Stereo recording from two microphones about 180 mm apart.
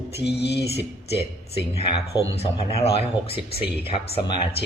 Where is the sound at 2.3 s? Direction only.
35° left (ahead or behind).